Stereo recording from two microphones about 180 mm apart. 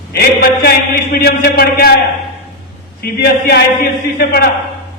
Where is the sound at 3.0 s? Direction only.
60° left (ahead or behind).